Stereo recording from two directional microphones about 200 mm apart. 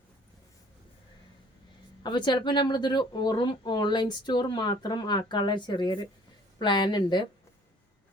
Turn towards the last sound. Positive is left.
turn(degrees=20)  # may be behind; listen again after turning